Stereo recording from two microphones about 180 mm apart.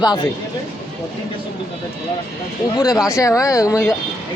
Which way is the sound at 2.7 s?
20° left (ahead or behind).